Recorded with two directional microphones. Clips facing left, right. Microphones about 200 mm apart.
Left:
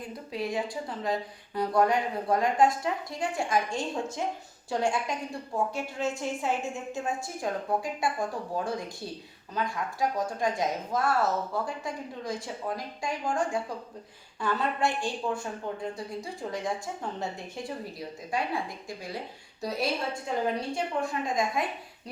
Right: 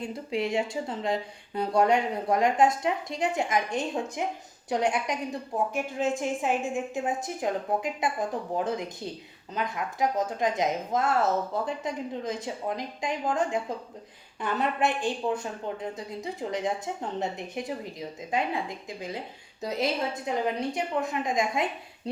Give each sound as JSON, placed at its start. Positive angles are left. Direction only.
{"t": 0.0, "sound": "a woman's voice", "side_deg": -25}
{"t": 14.4, "sound": "speech", "side_deg": -20}